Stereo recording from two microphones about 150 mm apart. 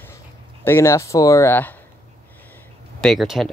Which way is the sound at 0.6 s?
15° left (ahead or behind).